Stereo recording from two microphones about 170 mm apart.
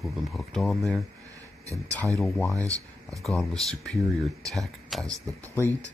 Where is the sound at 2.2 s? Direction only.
5° left (ahead or behind).